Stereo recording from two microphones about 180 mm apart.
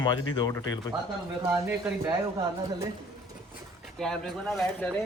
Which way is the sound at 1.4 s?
15° right (ahead or behind).